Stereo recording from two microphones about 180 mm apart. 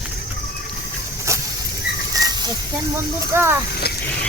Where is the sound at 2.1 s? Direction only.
20° right (ahead or behind).